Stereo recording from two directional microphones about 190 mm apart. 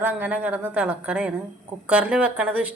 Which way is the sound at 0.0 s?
10° right (ahead or behind).